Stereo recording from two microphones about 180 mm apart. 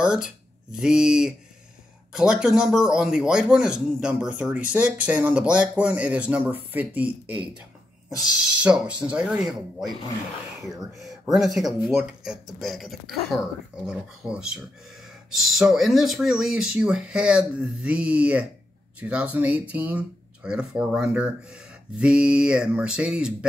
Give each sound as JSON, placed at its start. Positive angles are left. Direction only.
{"t": 0.0, "sound": "a man's voice", "side_deg": -5}
{"t": 11.0, "sound": "a man's voice", "side_deg": 0}